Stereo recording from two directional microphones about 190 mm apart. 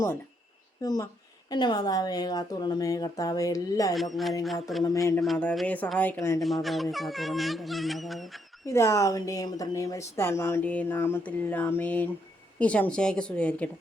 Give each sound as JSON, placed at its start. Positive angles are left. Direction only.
{"t": 0.8, "sound": "a woman's voice", "side_deg": 20}
{"t": 3.9, "sound": "speech", "side_deg": 0}
{"t": 4.8, "sound": "speech", "side_deg": 15}
{"t": 5.2, "sound": "speech", "side_deg": 5}
{"t": 6.4, "sound": "speech", "side_deg": 0}
{"t": 8.6, "sound": "speech", "side_deg": 15}